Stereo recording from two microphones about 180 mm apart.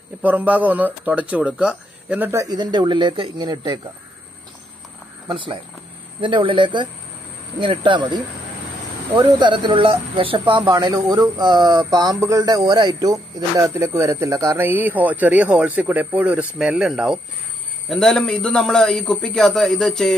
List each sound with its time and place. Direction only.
0.2 s speech: 10° right (ahead or behind)
5.3 s a man's voice: 25° right (ahead or behind); by 20.2 s centre (ahead or behind)